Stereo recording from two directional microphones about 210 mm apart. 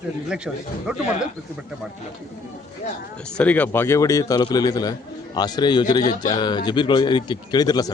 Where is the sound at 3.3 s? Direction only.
5° left (ahead or behind).